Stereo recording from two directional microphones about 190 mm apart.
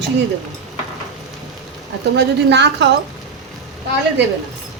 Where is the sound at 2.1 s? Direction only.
60° right (ahead or behind).